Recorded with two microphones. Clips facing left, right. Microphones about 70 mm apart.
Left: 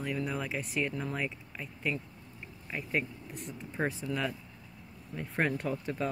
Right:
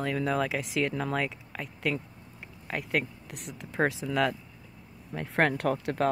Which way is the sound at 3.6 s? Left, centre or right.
Right.